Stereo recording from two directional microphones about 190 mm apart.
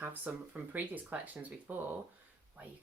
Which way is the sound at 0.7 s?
10° right (ahead or behind).